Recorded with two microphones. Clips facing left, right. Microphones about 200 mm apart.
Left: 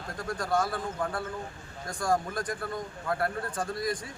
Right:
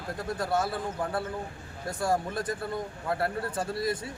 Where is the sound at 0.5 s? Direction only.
25° right (ahead or behind).